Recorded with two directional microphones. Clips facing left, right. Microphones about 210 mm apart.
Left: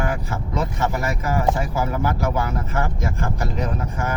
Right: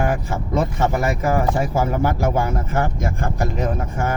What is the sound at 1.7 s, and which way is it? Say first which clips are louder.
Speech: right 3 dB; 45° right (ahead or behind).